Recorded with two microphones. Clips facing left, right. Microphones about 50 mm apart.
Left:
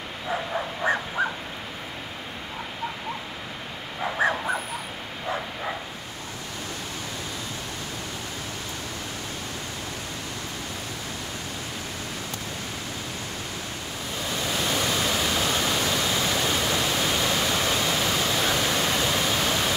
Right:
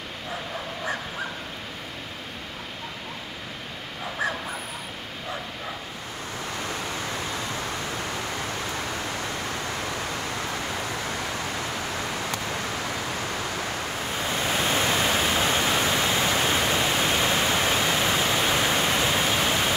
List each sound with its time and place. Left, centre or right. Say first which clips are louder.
4.2 s dog: left 4 dB; left
14.1 s pink noise: right 2 dB; right